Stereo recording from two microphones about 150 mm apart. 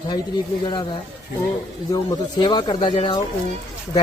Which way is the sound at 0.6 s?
30° left (ahead or behind).